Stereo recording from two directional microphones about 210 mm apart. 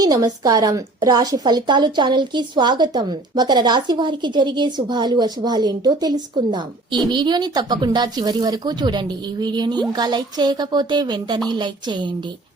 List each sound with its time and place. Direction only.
0.0 s a woman's voice: 15° right (ahead or behind)